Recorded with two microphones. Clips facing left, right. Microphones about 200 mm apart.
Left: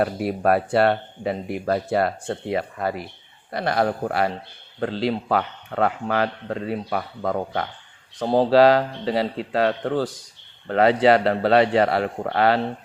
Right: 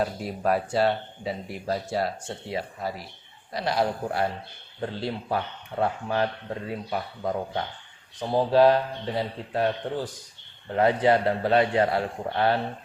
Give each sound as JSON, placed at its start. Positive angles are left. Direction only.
{"t": 0.0, "sound": "speech", "side_deg": 65}
{"t": 4.8, "sound": "speech", "side_deg": 90}
{"t": 8.2, "sound": "speech", "side_deg": 90}